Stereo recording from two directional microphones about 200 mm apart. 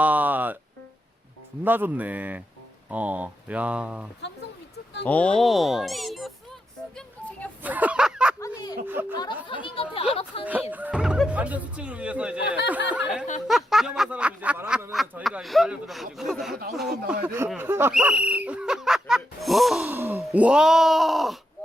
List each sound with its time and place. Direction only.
0.0 s music: 10° right (ahead or behind)
1.6 s speech: 10° right (ahead or behind)
5.0 s speech: 5° left (ahead or behind)
7.6 s a sound: 10° right (ahead or behind)
8.4 s a sound: 15° left (ahead or behind)
8.9 s speech: 10° right (ahead or behind)
9.1 s speech: 20° left (ahead or behind)
10.4 s speech: 10° right (ahead or behind)
17.2 s speech: 10° right (ahead or behind)